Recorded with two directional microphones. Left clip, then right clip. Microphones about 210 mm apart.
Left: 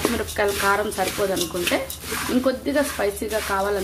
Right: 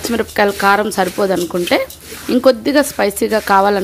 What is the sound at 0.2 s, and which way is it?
Speech, 45° right (ahead or behind).